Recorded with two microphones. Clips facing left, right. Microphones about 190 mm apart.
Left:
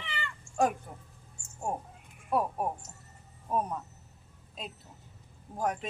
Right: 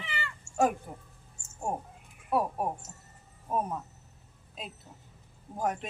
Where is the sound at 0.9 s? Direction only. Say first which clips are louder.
Right 3 dB; 5° right (ahead or behind).